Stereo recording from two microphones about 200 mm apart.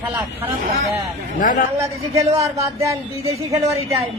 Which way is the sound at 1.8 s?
15° right (ahead or behind).